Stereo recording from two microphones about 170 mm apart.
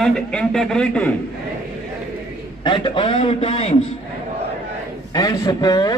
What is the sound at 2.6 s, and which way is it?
A man's voice, 30° left (ahead or behind).